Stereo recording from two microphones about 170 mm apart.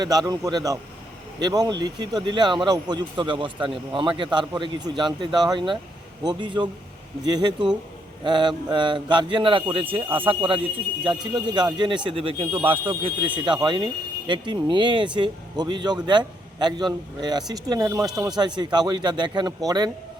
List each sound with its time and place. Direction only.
0.0 s speech: 25° right (ahead or behind)